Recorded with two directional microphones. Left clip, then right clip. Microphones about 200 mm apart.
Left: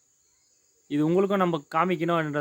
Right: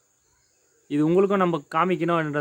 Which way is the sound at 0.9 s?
10° left (ahead or behind).